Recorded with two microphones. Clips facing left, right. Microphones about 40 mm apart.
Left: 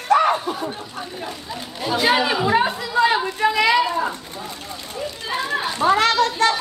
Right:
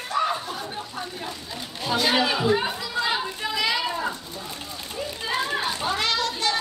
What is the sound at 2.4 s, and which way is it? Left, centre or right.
Chatter, left.